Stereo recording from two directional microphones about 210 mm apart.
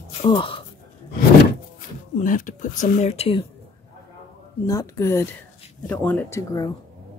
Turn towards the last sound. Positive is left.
turn(degrees=15)  # may be behind; listen again after turning